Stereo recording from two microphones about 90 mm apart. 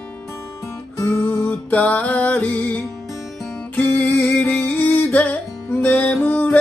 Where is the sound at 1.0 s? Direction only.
25° left (ahead or behind).